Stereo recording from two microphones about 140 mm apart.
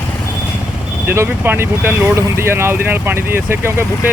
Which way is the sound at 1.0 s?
15° right (ahead or behind).